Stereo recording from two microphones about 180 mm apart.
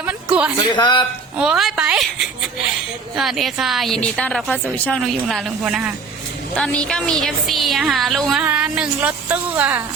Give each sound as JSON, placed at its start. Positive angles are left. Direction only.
{"t": 0.0, "sound": "a sound", "side_deg": -10}
{"t": 0.7, "sound": "a man's voice", "side_deg": 25}
{"t": 1.4, "sound": "speech", "side_deg": 0}